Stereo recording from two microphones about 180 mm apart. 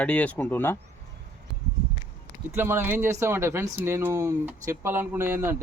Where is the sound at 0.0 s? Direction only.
5° left (ahead or behind).